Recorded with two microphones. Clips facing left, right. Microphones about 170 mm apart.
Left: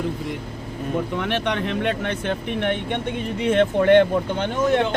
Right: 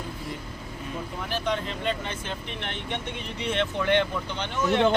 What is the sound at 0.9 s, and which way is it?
Speech, 75° left (ahead or behind).